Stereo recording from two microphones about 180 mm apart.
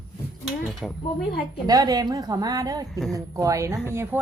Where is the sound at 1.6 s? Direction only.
20° right (ahead or behind).